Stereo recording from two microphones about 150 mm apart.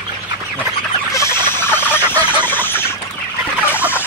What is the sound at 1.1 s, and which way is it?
Chicken, 15° left (ahead or behind).